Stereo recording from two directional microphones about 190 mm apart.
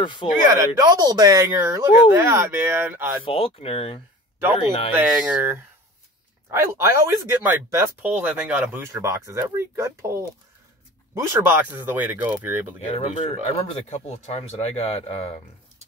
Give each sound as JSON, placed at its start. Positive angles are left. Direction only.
{"t": 0.0, "sound": "speech", "side_deg": 25}
{"t": 0.8, "sound": "speech", "side_deg": -20}
{"t": 3.3, "sound": "speech", "side_deg": 30}
{"t": 4.9, "sound": "speech", "side_deg": -10}
{"t": 11.1, "sound": "speech", "side_deg": -15}
{"t": 12.9, "sound": "speech", "side_deg": 30}